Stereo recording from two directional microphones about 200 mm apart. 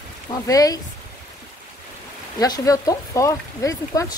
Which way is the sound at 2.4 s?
20° left (ahead or behind).